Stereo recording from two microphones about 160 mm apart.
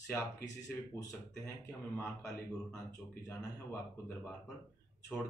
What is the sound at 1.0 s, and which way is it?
Speech, 15° left (ahead or behind).